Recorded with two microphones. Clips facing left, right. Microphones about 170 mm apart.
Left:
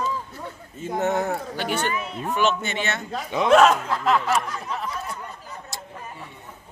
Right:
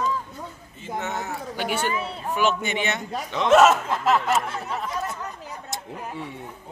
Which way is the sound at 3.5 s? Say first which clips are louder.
Even; 5° right (ahead or behind).